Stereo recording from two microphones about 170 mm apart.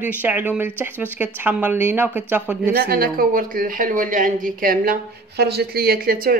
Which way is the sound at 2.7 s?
60° right (ahead or behind).